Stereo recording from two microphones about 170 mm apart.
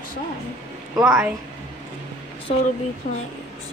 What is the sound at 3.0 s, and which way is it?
Speech, 50° left (ahead or behind).